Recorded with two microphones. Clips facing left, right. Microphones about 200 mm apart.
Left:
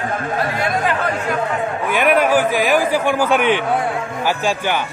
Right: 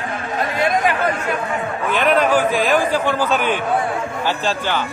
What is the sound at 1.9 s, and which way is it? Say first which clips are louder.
A man's voice: left 1 dB; 10° left (ahead or behind).